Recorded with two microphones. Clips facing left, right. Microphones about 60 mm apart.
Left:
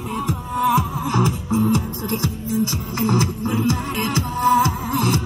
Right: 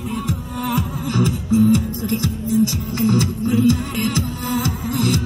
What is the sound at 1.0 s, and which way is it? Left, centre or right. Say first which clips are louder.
Music: even; left.